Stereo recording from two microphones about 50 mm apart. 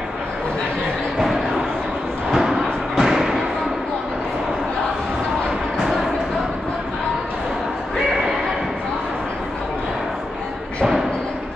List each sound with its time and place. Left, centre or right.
2.3 s thump: centre